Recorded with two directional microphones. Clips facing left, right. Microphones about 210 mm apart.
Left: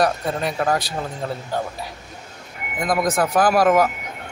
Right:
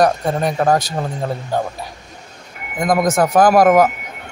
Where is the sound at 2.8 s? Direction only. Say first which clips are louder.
Right 5 dB; 45° right (ahead or behind).